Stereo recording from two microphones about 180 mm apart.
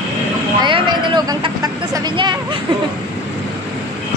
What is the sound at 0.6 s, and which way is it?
Speech, 25° right (ahead or behind).